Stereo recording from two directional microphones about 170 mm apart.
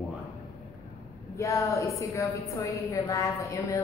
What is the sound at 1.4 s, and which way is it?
A woman's voice, 20° left (ahead or behind).